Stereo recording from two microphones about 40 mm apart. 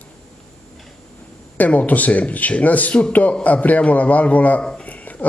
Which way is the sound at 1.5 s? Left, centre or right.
Left.